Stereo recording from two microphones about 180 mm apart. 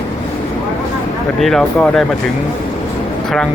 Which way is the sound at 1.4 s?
Centre (ahead or behind).